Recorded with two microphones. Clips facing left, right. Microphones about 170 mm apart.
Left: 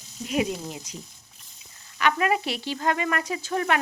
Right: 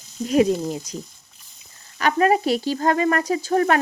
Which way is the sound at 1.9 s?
40° right (ahead or behind).